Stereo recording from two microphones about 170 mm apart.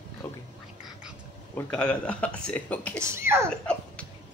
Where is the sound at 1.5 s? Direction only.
5° left (ahead or behind).